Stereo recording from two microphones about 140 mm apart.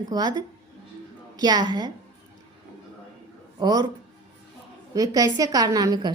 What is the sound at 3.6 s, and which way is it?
Speech, 25° right (ahead or behind).